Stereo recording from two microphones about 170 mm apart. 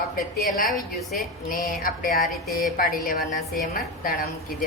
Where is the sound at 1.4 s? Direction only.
55° left (ahead or behind).